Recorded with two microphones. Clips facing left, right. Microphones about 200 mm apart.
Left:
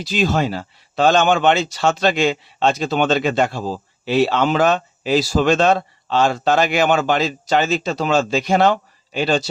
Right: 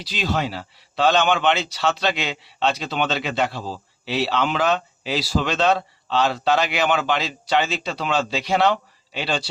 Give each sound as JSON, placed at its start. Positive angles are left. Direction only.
{"t": 0.0, "sound": "speech", "side_deg": 50}